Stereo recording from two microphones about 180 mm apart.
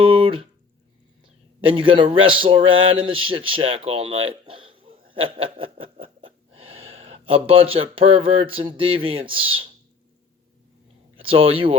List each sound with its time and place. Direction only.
0.0 s speech: 30° right (ahead or behind)
1.6 s a man's voice: 30° right (ahead or behind)
11.2 s speech: 30° right (ahead or behind)